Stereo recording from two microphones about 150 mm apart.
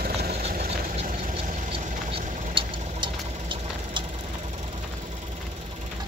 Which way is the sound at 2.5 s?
35° right (ahead or behind).